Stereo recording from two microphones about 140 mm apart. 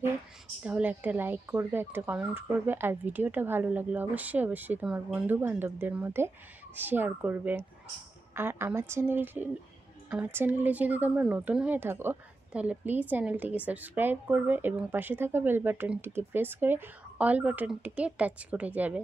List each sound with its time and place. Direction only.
0.7 s speech: 10° right (ahead or behind)